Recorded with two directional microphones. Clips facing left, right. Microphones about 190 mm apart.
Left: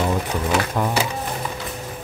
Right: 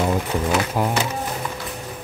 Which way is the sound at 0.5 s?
10° right (ahead or behind).